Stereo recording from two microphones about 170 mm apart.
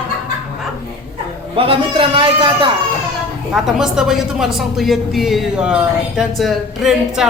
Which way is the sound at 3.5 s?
5° right (ahead or behind).